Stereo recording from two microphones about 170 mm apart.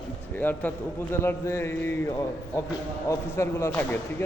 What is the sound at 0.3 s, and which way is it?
A man's voice, 10° left (ahead or behind).